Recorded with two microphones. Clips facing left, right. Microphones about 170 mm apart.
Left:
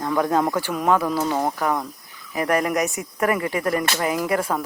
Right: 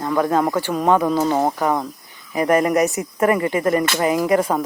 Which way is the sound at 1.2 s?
20° right (ahead or behind).